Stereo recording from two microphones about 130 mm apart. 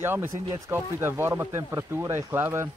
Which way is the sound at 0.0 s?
15° right (ahead or behind).